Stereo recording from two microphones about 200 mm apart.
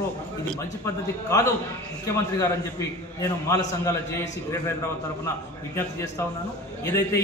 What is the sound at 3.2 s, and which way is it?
Speech, 15° left (ahead or behind).